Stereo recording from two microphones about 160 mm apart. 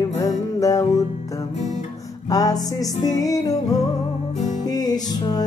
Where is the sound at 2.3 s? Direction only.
25° left (ahead or behind).